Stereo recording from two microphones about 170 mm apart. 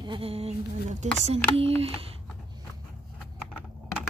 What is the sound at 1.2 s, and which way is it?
Speech, 35° right (ahead or behind).